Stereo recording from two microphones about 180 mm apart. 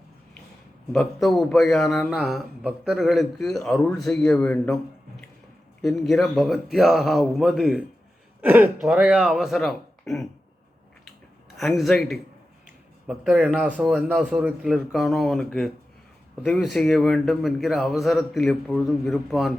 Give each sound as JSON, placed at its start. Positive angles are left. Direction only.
{"t": 0.9, "sound": "a man's voice", "side_deg": 0}
{"t": 5.8, "sound": "a man's voice", "side_deg": 0}
{"t": 11.6, "sound": "a man's voice", "side_deg": 0}